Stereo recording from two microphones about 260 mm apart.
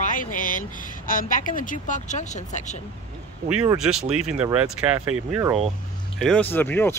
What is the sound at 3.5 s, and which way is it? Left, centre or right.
Speech, centre.